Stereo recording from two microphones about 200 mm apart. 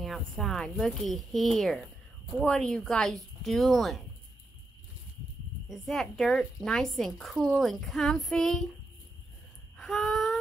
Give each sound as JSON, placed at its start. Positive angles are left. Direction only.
{"t": 0.0, "sound": "speech", "side_deg": 0}
{"t": 5.7, "sound": "speech", "side_deg": 0}
{"t": 9.8, "sound": "a sound", "side_deg": 0}